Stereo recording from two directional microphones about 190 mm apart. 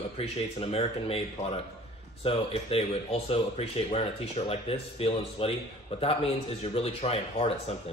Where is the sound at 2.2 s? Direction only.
30° left (ahead or behind).